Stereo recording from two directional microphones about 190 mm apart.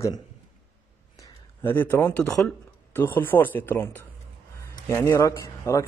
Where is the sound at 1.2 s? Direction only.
25° left (ahead or behind).